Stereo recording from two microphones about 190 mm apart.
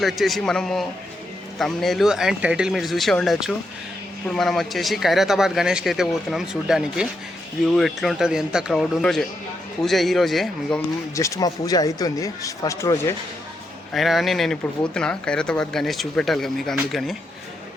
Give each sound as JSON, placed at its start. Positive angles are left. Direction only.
{"t": 0.0, "sound": "speech", "side_deg": 0}
{"t": 11.1, "sound": "speech", "side_deg": 15}
{"t": 13.9, "sound": "speech", "side_deg": 0}